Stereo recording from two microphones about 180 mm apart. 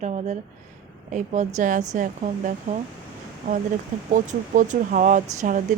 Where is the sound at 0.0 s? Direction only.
40° right (ahead or behind).